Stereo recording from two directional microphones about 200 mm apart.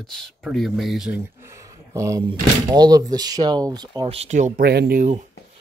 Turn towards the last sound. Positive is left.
turn(degrees=-50)  # may be behind; listen again after turning